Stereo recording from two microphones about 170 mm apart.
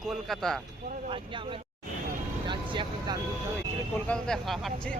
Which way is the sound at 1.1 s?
30° right (ahead or behind).